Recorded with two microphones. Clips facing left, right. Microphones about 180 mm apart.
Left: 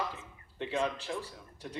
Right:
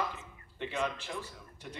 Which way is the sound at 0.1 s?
30° left (ahead or behind).